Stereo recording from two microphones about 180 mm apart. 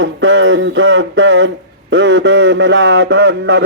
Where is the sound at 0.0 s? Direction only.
90° right.